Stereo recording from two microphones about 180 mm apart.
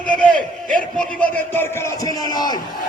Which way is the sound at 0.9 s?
10° left (ahead or behind).